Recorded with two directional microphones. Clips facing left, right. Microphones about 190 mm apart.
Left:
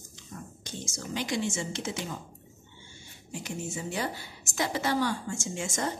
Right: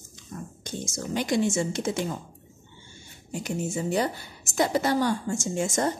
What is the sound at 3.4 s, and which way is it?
A woman's voice, 40° right (ahead or behind).